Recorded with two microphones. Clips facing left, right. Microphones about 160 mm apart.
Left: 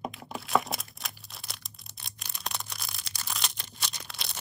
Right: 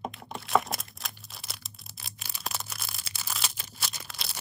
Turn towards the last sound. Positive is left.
turn(degrees=0)  # may be behind; listen again after turning